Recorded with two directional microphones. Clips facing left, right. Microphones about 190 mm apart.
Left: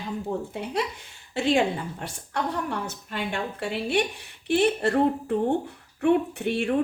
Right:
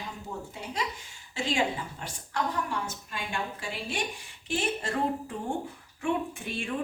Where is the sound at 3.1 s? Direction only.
65° left (ahead or behind).